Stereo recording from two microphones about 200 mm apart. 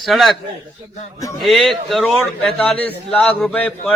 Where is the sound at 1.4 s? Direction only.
Centre (ahead or behind).